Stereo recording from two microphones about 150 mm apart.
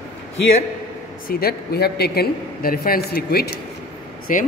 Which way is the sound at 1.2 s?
90° left.